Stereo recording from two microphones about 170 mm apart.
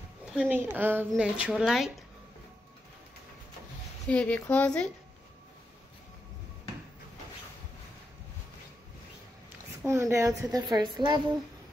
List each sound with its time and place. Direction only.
0.2 s speech: 5° right (ahead or behind)
4.1 s speech: 5° left (ahead or behind)
9.8 s speech: 15° right (ahead or behind)